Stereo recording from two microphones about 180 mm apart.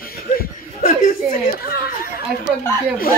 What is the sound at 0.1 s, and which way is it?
Chuckle, 55° left (ahead or behind).